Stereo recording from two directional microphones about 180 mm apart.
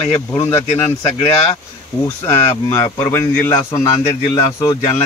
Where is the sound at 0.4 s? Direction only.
15° left (ahead or behind).